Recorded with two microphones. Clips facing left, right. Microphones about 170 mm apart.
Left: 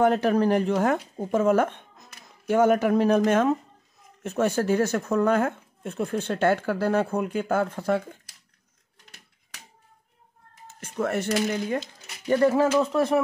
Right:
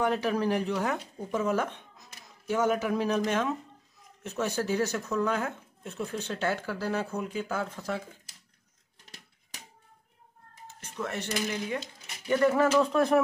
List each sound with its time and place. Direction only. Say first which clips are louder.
0.0 s speech: left 7 dB; 50° left (ahead or behind)
10.8 s speech: left 8 dB; 50° left (ahead or behind)
12.3 s speech: left 4 dB; 30° left (ahead or behind)
12.8 s speech: left 1 dB; 5° left (ahead or behind)